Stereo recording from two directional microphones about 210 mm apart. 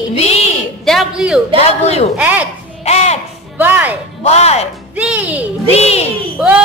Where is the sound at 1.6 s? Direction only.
30° left (ahead or behind).